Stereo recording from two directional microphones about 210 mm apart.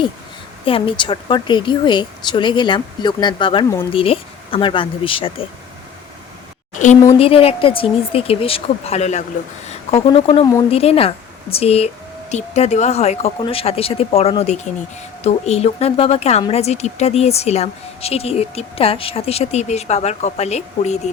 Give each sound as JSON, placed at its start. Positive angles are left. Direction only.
{"t": 0.6, "sound": "speech", "side_deg": 25}
{"t": 7.2, "sound": "speech", "side_deg": 25}